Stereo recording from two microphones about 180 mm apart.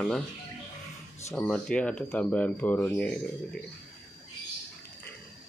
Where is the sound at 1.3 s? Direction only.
5° left (ahead or behind).